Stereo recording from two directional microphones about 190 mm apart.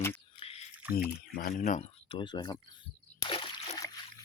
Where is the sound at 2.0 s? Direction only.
25° left (ahead or behind).